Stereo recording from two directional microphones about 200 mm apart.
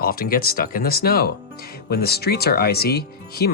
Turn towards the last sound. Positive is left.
turn(degrees=50)  # may be behind; listen again after turning